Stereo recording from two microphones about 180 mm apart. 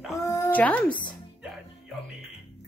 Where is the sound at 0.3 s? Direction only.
10° left (ahead or behind).